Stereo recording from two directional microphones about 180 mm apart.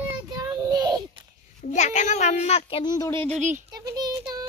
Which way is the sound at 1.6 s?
40° left (ahead or behind).